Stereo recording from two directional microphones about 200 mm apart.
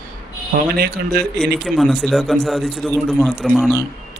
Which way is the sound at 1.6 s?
Centre (ahead or behind).